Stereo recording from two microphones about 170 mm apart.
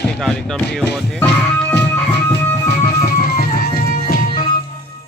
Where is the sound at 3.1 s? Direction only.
60° left (ahead or behind).